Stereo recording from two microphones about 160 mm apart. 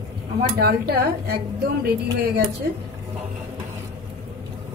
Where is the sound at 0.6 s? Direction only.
75° right (ahead or behind).